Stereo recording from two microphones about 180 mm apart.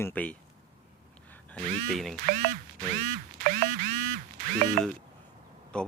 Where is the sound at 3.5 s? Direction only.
55° right (ahead or behind).